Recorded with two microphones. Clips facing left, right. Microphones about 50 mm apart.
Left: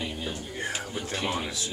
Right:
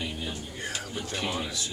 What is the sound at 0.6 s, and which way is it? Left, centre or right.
Speech, left.